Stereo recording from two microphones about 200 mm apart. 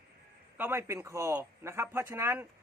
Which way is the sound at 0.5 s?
10° right (ahead or behind).